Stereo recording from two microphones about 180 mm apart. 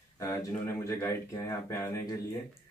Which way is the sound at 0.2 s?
20° left (ahead or behind).